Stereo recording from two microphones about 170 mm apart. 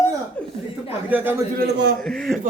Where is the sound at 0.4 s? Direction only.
5° left (ahead or behind).